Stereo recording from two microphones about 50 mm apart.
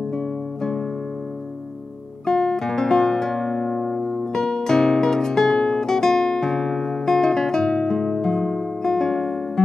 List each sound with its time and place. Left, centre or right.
2.2 s music: centre